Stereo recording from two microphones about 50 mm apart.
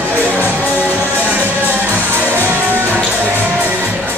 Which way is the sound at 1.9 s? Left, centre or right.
Right.